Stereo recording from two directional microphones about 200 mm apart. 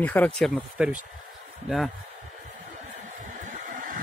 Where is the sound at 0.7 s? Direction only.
5° right (ahead or behind).